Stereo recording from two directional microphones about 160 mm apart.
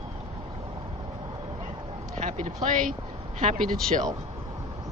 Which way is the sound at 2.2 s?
45° right (ahead or behind).